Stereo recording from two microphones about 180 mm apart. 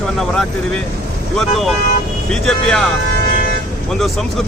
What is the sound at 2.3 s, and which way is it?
Speech, 5° left (ahead or behind).